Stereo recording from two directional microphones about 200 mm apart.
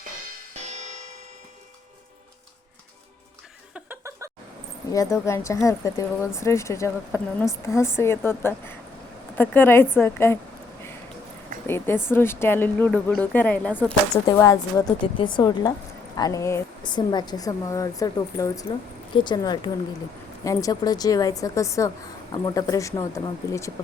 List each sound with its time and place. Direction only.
0.7 s music: 35° right (ahead or behind)
3.8 s chuckle: 10° right (ahead or behind)
4.9 s speech: 15° left (ahead or behind)
11.6 s speech: 10° left (ahead or behind)